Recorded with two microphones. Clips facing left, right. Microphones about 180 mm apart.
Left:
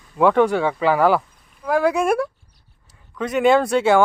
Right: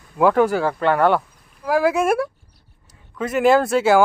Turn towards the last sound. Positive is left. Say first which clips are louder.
# even
turn(degrees=-5)  # may be behind; listen again after turning